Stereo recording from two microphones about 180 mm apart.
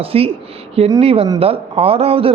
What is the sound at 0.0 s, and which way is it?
Speech, 30° right (ahead or behind).